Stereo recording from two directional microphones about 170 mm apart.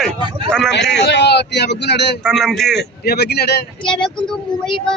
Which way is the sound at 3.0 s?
70° left (ahead or behind).